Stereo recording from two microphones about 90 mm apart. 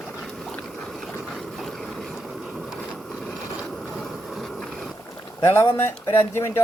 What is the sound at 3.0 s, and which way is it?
Mechanisms, centre (ahead or behind).